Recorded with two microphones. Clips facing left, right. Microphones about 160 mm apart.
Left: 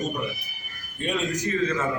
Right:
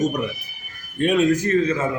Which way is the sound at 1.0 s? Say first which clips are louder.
Right 9 dB; 55° right (ahead or behind).